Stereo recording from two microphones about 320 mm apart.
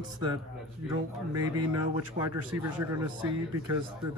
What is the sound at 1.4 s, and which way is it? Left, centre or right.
Speech, right.